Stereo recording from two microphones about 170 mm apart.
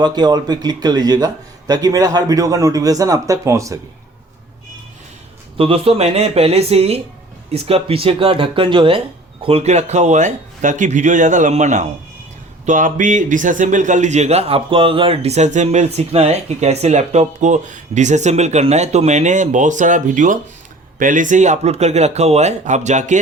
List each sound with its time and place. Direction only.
0.0 s a man's voice: 25° right (ahead or behind)
5.5 s speech: 35° right (ahead or behind)